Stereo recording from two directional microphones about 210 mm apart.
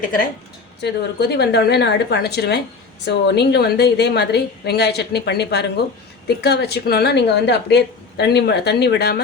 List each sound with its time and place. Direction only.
0.0 s a woman's voice: 40° left (ahead or behind)
0.8 s a woman's voice: 50° left (ahead or behind)